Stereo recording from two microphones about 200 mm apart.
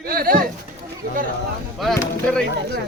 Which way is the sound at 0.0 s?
45° right (ahead or behind).